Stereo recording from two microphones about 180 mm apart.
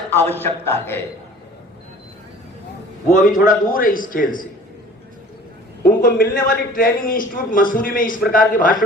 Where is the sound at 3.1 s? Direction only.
45° left (ahead or behind).